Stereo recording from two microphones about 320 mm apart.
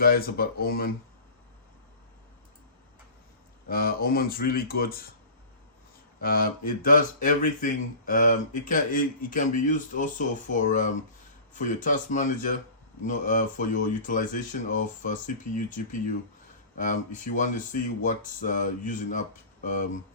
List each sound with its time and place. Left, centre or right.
0.0 s speech: left
3.7 s speech: left
6.1 s speech: left